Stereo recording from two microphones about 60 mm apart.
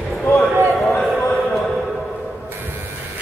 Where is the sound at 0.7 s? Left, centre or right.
Centre.